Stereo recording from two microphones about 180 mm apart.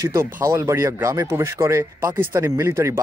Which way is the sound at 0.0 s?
15° right (ahead or behind).